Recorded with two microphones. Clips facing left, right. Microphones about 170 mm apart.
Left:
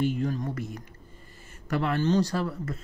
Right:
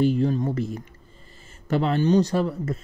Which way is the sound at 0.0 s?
30° right (ahead or behind).